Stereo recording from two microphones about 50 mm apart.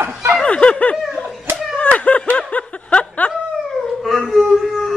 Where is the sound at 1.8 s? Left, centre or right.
Left.